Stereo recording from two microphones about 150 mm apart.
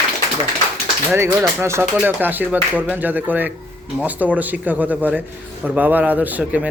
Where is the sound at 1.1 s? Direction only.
15° right (ahead or behind).